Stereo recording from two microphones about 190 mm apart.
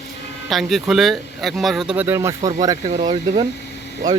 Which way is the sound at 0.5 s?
Centre (ahead or behind).